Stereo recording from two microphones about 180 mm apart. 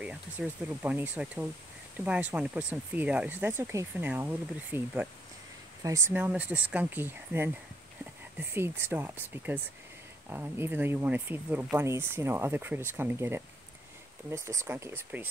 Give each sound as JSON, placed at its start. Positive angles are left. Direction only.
{"t": 0.0, "sound": "speech", "side_deg": -5}